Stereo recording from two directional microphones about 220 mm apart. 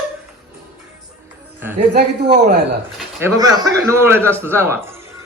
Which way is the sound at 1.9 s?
50° right (ahead or behind).